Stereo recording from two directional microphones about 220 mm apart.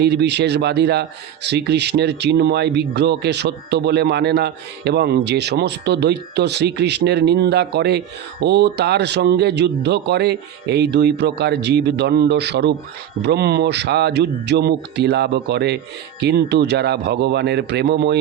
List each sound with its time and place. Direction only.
0.0 s speech: 50° right (ahead or behind)